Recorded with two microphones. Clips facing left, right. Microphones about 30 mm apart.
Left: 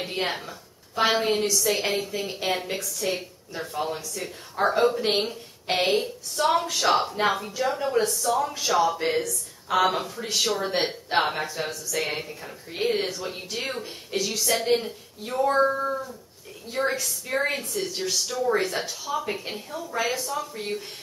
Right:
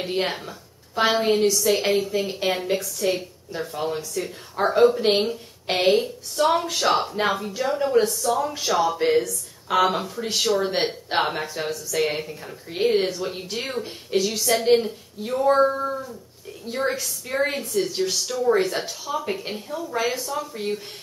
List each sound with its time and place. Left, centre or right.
0.0 s speech: centre
16.7 s a woman's voice: right
17.0 s speech: centre